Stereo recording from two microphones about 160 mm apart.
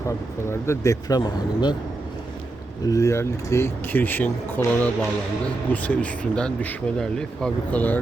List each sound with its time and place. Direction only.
0.4 s speech: 15° left (ahead or behind)
2.8 s speech: 20° left (ahead or behind)